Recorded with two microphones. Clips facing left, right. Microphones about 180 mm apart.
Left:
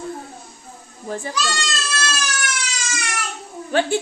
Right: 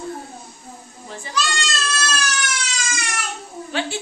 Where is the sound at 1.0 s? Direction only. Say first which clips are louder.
Left 9 dB; 50° left (ahead or behind).